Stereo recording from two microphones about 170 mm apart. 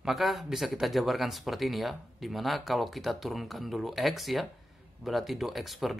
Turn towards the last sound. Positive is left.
turn(degrees=0)  # may be behind; listen again after turning